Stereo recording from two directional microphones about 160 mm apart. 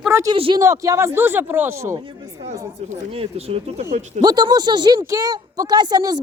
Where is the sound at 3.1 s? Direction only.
35° right (ahead or behind).